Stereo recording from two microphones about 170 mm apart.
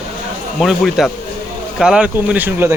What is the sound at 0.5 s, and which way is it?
Speech, centre (ahead or behind).